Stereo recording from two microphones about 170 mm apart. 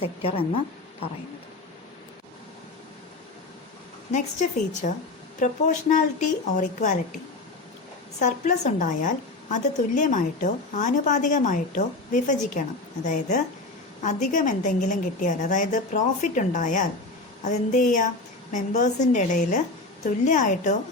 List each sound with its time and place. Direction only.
0.0 s speech: 35° left (ahead or behind)
4.1 s a woman's voice: 45° left (ahead or behind)
8.2 s a woman's voice: 45° left (ahead or behind)